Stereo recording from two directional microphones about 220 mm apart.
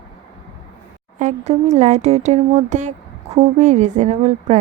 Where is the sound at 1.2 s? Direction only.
30° right (ahead or behind).